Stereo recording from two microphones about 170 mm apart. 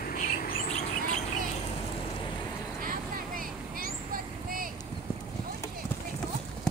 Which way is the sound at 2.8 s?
55° right (ahead or behind).